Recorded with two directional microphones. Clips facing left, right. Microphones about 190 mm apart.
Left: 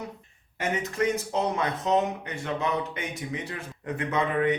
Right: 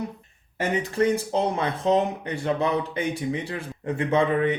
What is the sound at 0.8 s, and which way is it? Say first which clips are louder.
Speech: right 5 dB; 30° right (ahead or behind).